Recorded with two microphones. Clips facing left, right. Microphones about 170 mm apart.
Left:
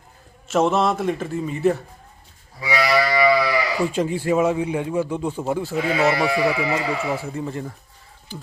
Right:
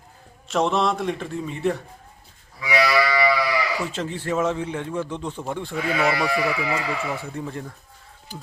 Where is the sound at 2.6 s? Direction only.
30° left (ahead or behind).